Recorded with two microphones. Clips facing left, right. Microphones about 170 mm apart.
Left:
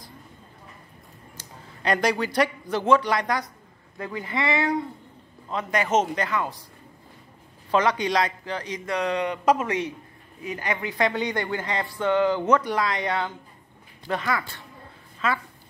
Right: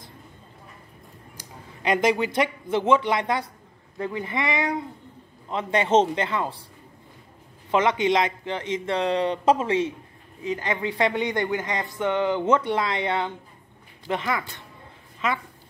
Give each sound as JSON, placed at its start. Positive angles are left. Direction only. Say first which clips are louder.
{"t": 1.3, "sound": "speech", "louder": "right 1 dB", "side_deg": -15}
{"t": 7.7, "sound": "speech", "louder": "right 1 dB", "side_deg": -25}